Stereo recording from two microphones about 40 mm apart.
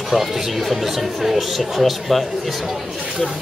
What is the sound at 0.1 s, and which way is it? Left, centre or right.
Speech, centre.